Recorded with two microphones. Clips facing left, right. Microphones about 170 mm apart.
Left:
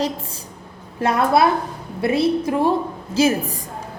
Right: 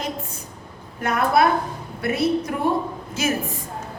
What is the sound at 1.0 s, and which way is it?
A woman's voice, 30° left (ahead or behind).